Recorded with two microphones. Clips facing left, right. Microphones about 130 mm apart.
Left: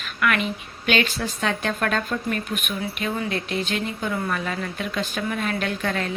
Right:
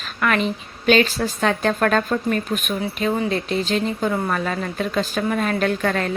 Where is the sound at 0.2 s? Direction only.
35° right (ahead or behind).